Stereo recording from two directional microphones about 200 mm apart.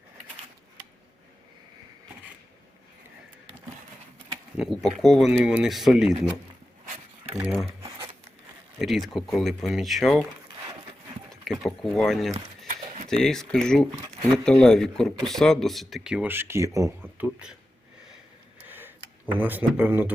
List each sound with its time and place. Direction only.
4.5 s speech: centre (ahead or behind)
8.8 s speech: centre (ahead or behind)
11.6 s speech: centre (ahead or behind)
12.3 s a sound: 35° right (ahead or behind)
13.1 s speech: centre (ahead or behind)
13.9 s a sound: 20° right (ahead or behind)
14.4 s speech: 5° left (ahead or behind); by 16.9 s 15° right (ahead or behind)
17.2 s speech: 5° right (ahead or behind)
18.7 s a sound: 10° right (ahead or behind)
19.3 s speech: 10° right (ahead or behind)